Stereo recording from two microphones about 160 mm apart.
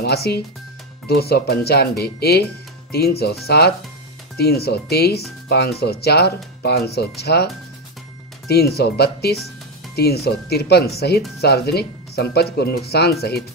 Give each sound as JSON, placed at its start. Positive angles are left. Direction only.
{"t": 0.0, "sound": "speech", "side_deg": 85}
{"t": 4.4, "sound": "speech", "side_deg": 80}
{"t": 8.5, "sound": "speech", "side_deg": 85}